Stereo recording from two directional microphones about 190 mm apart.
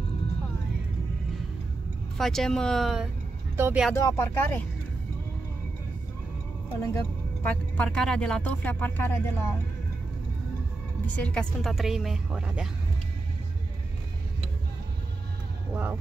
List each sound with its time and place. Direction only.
2.1 s a woman's voice: centre (ahead or behind)
3.5 s speech: 10° right (ahead or behind)
3.9 s speech: 15° left (ahead or behind)
6.9 s speech: 10° left (ahead or behind)
11.1 s a woman's voice: 5° left (ahead or behind)
15.7 s speech: 10° right (ahead or behind)